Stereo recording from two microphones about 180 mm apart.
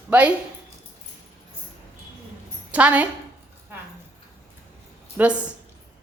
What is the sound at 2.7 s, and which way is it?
Speech, 10° right (ahead or behind).